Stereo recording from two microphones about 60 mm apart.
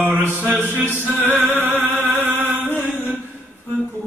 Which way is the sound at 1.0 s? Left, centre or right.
Right.